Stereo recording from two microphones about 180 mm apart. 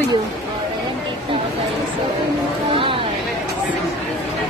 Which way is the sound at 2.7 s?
30° right (ahead or behind).